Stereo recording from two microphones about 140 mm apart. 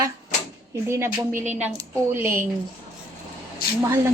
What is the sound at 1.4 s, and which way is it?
Speech, 55° right (ahead or behind).